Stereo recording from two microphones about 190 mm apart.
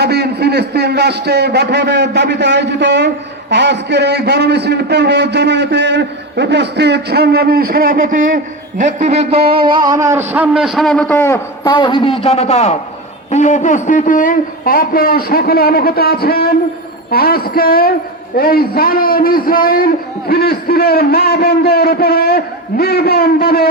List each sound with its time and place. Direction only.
0.0 s a man's voice: 60° right (ahead or behind); by 9.5 s 35° right (ahead or behind)
9.6 s a man's voice: 25° right (ahead or behind); by 23.6 s 55° left (ahead or behind)